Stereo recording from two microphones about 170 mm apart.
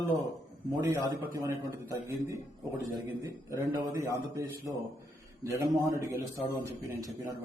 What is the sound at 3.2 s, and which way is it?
A man's voice, 15° right (ahead or behind).